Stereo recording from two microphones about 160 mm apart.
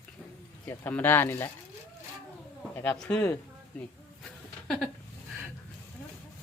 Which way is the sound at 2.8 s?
10° left (ahead or behind).